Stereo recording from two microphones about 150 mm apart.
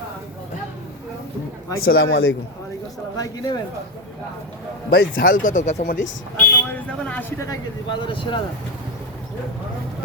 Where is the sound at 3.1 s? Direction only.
25° left (ahead or behind).